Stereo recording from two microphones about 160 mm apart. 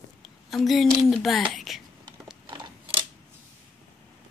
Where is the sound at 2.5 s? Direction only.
35° right (ahead or behind).